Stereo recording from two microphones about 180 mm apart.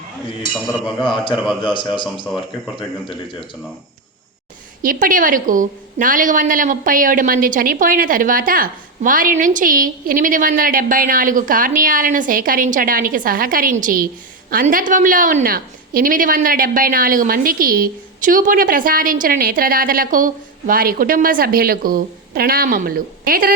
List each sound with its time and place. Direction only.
1.0 s a man's voice: 25° left (ahead or behind)
4.8 s a woman's voice: 50° right (ahead or behind)